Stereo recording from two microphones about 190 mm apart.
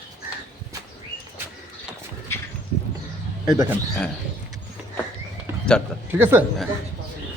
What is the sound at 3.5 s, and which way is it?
Speech, 15° right (ahead or behind).